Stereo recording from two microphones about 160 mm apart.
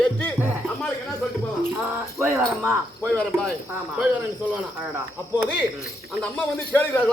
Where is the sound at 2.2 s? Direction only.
15° right (ahead or behind).